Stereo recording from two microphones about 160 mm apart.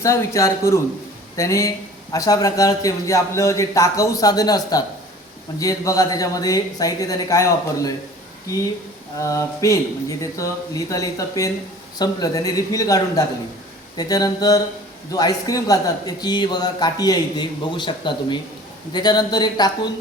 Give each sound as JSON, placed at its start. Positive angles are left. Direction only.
{"t": 0.0, "sound": "a man's voice", "side_deg": 20}
{"t": 9.1, "sound": "a man's voice", "side_deg": 20}